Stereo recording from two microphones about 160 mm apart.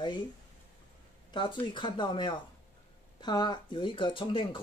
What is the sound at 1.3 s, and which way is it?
Speech, 30° left (ahead or behind).